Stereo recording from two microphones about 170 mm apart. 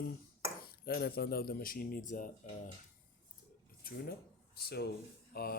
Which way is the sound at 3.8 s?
60° left (ahead or behind).